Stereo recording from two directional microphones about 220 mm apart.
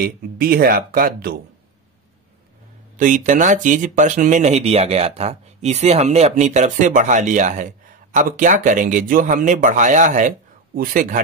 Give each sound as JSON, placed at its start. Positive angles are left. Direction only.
{"t": 0.0, "sound": "speech", "side_deg": -40}
{"t": 3.0, "sound": "speech", "side_deg": -35}